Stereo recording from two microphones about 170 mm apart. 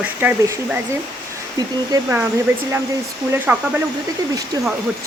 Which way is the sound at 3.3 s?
10° right (ahead or behind).